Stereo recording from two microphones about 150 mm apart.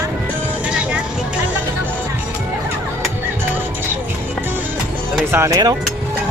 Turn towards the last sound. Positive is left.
turn(degrees=-20)  # may be behind; listen again after turning